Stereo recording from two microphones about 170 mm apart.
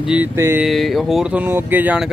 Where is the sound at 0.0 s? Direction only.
10° right (ahead or behind).